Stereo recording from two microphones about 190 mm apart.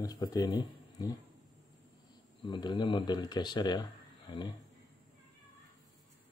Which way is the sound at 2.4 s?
25° left (ahead or behind).